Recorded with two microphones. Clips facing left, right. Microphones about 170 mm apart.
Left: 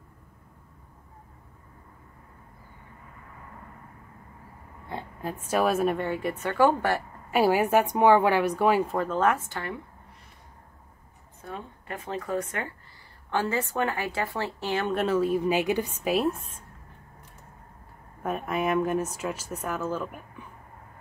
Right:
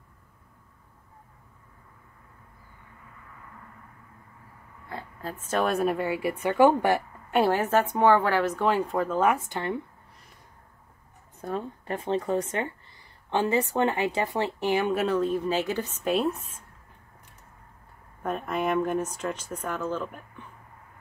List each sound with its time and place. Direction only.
4.8 s speech: 20° left (ahead or behind); by 7.0 s 15° right (ahead or behind)
7.2 s a woman's voice: 5° left (ahead or behind)
9.2 s speech: 15° right (ahead or behind)
11.4 s speech: 35° right (ahead or behind); by 16.4 s centre (ahead or behind)
18.2 s speech: 5° left (ahead or behind)